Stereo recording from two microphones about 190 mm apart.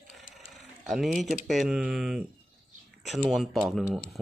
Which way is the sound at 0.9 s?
Centre (ahead or behind).